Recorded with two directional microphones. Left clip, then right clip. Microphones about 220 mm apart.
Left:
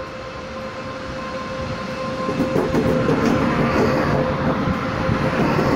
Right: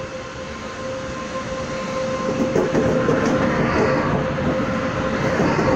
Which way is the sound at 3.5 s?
35° left (ahead or behind).